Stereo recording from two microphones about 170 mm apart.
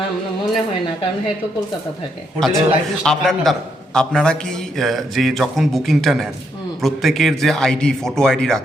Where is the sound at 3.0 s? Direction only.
5° left (ahead or behind).